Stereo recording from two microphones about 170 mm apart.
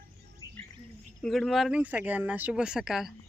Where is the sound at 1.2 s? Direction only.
Centre (ahead or behind).